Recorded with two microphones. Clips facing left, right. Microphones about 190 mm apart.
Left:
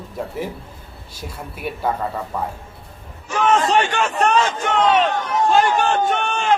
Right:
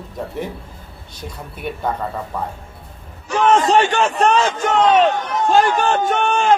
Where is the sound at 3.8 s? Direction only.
35° right (ahead or behind).